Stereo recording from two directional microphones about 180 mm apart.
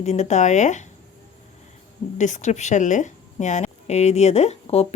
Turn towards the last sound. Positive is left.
turn(degrees=35)  # may be behind; listen again after turning